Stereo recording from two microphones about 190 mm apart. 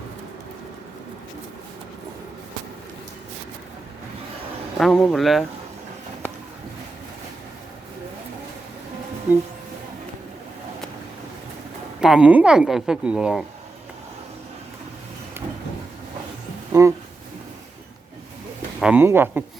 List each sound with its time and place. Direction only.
4.8 s speech: centre (ahead or behind)
11.9 s speech: 5° right (ahead or behind)
16.7 s a sound: 20° right (ahead or behind)
18.8 s speech: 10° right (ahead or behind)